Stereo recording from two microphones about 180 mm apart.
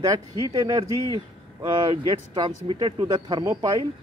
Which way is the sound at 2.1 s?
25° right (ahead or behind).